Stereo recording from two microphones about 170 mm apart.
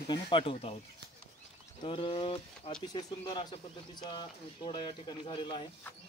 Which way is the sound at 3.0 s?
25° left (ahead or behind).